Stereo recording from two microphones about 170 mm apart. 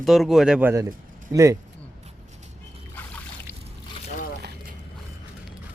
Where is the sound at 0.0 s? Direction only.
Centre (ahead or behind).